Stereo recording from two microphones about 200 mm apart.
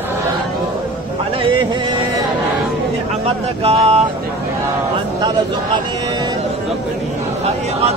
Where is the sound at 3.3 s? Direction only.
30° right (ahead or behind).